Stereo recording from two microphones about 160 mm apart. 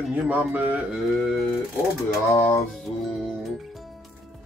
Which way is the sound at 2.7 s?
Centre (ahead or behind).